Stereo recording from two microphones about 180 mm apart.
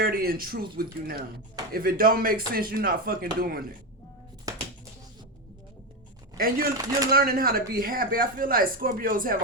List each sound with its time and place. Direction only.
0.0 s speech: 55° right (ahead or behind)
4.5 s music: 20° right (ahead or behind)
6.3 s a man's voice: 55° right (ahead or behind)
6.7 s speech: 20° right (ahead or behind)
7.1 s speech: 55° right (ahead or behind)